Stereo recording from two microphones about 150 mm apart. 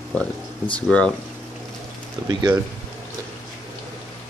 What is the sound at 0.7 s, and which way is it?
Speech, 5° left (ahead or behind).